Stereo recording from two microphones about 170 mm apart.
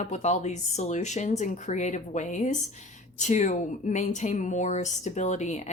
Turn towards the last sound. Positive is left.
turn(degrees=45)  # may be behind; listen again after turning